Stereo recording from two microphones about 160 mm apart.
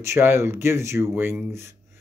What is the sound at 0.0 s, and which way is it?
Speech, 15° right (ahead or behind).